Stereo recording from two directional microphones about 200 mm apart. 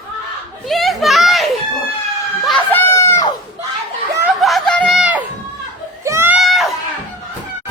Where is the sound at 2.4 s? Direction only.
5° left (ahead or behind).